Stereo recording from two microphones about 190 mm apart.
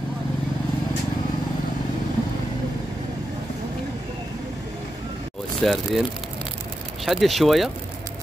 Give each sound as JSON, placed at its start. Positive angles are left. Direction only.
{"t": 5.6, "sound": "speech", "side_deg": 0}
{"t": 7.1, "sound": "speech", "side_deg": 0}